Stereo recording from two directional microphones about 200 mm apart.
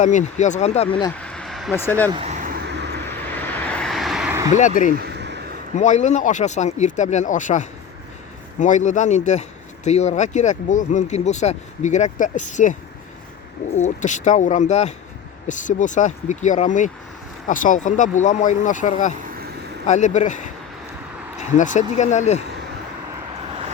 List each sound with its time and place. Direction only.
0.0 s speech: 35° left (ahead or behind)
1.2 s a sound: 5° left (ahead or behind)
1.7 s speech: 10° left (ahead or behind)
2.0 s vehicle: 30° right (ahead or behind); by 2.9 s 55° right (ahead or behind)
3.1 s vehicle: 10° left (ahead or behind)
4.5 s speech: 40° left (ahead or behind)
4.9 s a sound: 55° right (ahead or behind)
5.7 s speech: 35° left (ahead or behind)
13.7 s speech: 35° left (ahead or behind)